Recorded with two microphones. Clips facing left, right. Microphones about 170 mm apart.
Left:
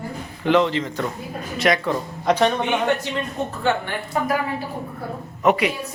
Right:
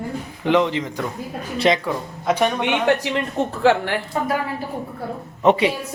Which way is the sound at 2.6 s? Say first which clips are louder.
Right 2 dB; 80° right.